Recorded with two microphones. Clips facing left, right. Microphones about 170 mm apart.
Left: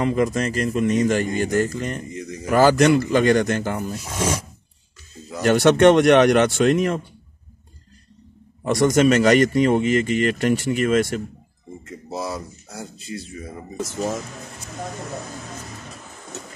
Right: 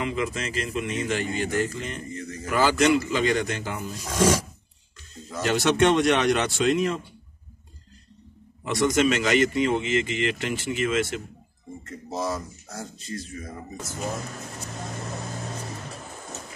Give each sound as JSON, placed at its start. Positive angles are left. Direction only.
{"t": 0.0, "sound": "a man's voice", "side_deg": 45}
{"t": 2.1, "sound": "a man's voice", "side_deg": 15}
{"t": 2.5, "sound": "a man's voice", "side_deg": 45}
{"t": 4.0, "sound": "speech", "side_deg": 10}
{"t": 5.4, "sound": "speech", "side_deg": 55}
{"t": 8.6, "sound": "a man's voice", "side_deg": 40}
{"t": 12.1, "sound": "speech", "side_deg": 10}